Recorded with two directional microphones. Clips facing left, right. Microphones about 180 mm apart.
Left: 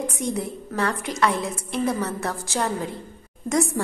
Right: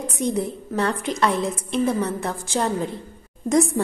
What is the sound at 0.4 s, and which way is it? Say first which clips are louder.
Speech: right 3 dB; 25° right (ahead or behind).